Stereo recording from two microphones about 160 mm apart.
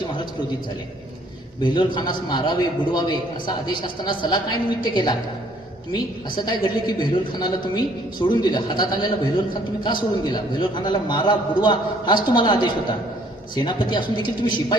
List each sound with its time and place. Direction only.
1.6 s a man's voice: 30° left (ahead or behind)